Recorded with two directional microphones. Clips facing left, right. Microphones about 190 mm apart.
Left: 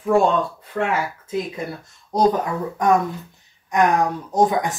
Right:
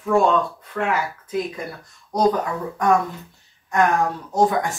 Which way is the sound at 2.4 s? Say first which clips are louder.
Left 1 dB; 20° left (ahead or behind).